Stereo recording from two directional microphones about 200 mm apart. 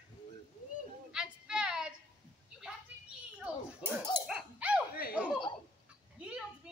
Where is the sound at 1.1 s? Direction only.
5° right (ahead or behind).